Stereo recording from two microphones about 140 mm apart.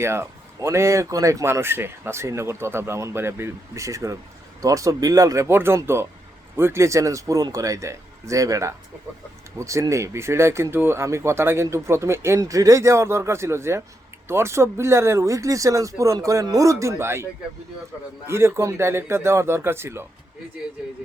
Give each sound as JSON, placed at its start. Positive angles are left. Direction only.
{"t": 0.0, "sound": "speech", "side_deg": -20}
{"t": 18.3, "sound": "speech", "side_deg": -20}